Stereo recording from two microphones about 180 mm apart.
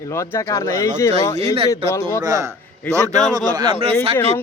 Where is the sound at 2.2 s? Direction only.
20° right (ahead or behind).